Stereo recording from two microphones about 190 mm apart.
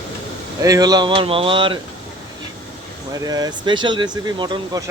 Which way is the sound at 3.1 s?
20° right (ahead or behind).